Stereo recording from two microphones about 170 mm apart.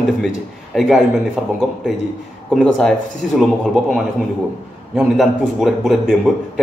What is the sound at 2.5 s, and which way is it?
A man's voice, 5° left (ahead or behind).